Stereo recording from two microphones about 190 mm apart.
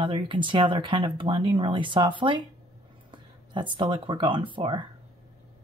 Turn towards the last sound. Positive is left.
turn(degrees=-25)  # may be behind; listen again after turning